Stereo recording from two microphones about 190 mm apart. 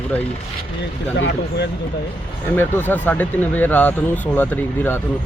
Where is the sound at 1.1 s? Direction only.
65° left (ahead or behind).